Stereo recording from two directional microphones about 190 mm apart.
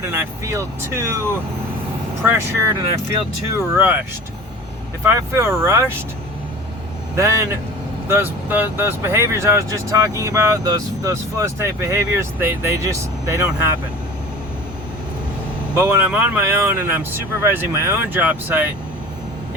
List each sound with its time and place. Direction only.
0.1 s speech: 15° right (ahead or behind)
5.0 s speech: 15° right (ahead or behind)
8.0 s speech: 10° right (ahead or behind)
15.7 s speech: 15° right (ahead or behind)